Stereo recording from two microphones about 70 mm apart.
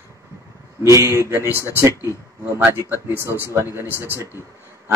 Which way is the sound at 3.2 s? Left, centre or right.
Right.